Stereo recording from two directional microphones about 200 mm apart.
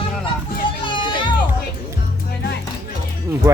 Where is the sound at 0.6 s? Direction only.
25° left (ahead or behind).